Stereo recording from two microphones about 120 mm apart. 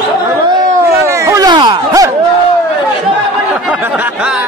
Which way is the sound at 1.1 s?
25° right (ahead or behind).